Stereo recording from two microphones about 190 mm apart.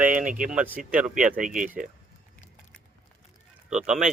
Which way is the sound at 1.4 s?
45° right (ahead or behind).